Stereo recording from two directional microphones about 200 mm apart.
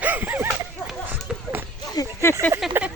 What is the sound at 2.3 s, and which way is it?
Speech, 15° right (ahead or behind).